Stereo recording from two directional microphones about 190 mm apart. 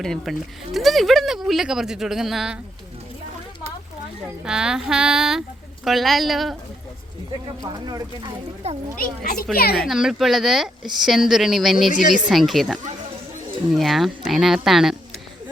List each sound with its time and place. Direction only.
0.0 s speech: centre (ahead or behind)
4.4 s speech: 5° right (ahead or behind)
7.6 s speech: 20° right (ahead or behind)
9.0 s a child's voice: 50° left (ahead or behind)
9.7 s speech: centre (ahead or behind)
11.9 s speech: 40° left (ahead or behind)
12.3 s speech: centre (ahead or behind)